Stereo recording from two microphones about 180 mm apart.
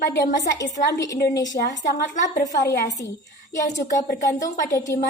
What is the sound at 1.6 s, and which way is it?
Speech, 50° left (ahead or behind).